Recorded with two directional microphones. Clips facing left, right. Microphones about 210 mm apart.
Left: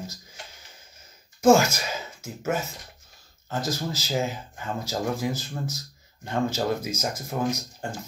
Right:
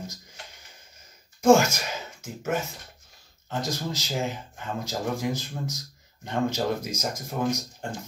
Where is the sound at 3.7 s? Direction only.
5° left (ahead or behind).